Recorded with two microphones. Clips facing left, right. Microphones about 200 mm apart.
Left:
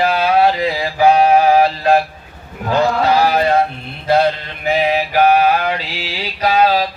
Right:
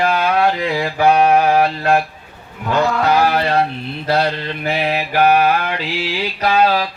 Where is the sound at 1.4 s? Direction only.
35° left (ahead or behind).